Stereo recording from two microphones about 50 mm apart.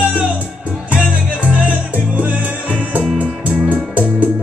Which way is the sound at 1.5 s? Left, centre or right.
Right.